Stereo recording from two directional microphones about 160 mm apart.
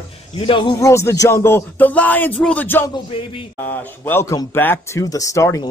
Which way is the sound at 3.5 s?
10° left (ahead or behind).